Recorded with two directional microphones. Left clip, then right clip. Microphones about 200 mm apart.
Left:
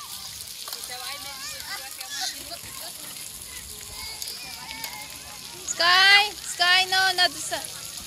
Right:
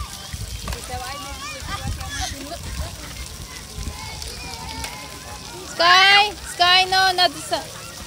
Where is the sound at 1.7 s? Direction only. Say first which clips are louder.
Right 4 dB; 35° right (ahead or behind).